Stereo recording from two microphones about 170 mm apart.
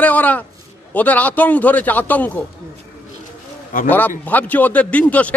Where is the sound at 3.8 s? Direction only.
10° left (ahead or behind).